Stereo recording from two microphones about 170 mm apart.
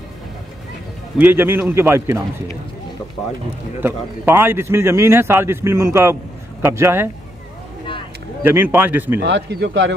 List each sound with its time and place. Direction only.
1.1 s a man's voice: 10° right (ahead or behind)
3.8 s a man's voice: 10° right (ahead or behind)
8.4 s a man's voice: 10° right (ahead or behind)
9.2 s speech: 85° right